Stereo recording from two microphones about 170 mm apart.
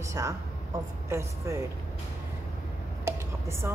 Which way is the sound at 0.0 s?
15° right (ahead or behind).